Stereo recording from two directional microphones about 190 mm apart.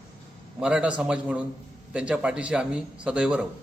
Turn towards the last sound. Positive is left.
turn(degrees=-5)  # may be behind; listen again after turning